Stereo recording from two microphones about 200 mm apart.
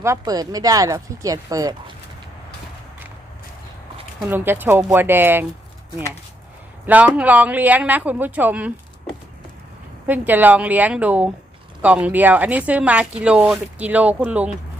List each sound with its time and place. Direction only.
0.0 s speech: 15° right (ahead or behind)
4.3 s speech: 10° right (ahead or behind)
6.8 s speech: 5° right (ahead or behind)
10.1 s speech: 10° right (ahead or behind)